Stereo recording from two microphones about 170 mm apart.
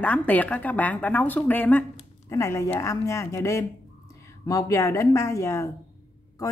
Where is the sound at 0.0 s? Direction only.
10° left (ahead or behind).